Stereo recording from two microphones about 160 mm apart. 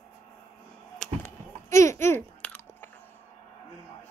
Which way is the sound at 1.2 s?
20° left (ahead or behind).